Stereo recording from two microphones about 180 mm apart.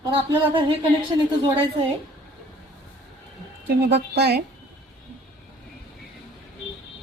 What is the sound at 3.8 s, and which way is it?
Speech, 70° right (ahead or behind).